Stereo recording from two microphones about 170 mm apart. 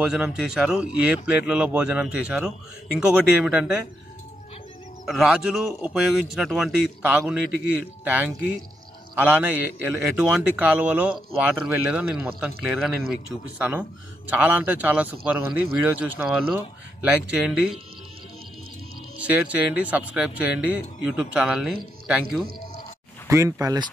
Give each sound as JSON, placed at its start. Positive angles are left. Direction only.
{"t": 0.0, "sound": "a man's voice", "side_deg": -5}
{"t": 5.0, "sound": "a man's voice", "side_deg": 0}
{"t": 19.2, "sound": "a man's voice", "side_deg": -10}
{"t": 23.2, "sound": "speech", "side_deg": -20}